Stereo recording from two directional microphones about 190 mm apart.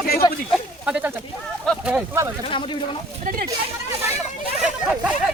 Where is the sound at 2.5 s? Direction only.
25° left (ahead or behind).